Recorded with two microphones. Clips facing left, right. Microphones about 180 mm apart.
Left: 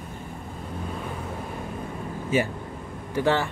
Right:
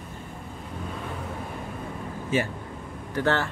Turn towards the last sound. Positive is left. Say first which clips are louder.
# left 2 dB
turn(degrees=10)  # may be behind; listen again after turning